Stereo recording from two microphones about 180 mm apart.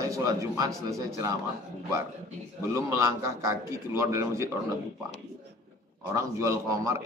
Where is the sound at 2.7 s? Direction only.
15° right (ahead or behind).